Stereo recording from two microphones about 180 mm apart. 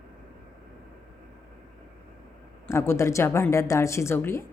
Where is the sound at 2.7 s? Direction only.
15° left (ahead or behind).